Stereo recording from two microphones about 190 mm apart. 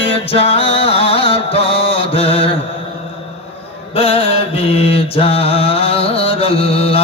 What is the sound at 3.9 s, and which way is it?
Mantra, 30° left (ahead or behind).